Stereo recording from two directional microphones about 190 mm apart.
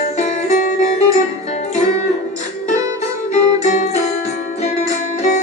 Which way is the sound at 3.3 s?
40° left (ahead or behind).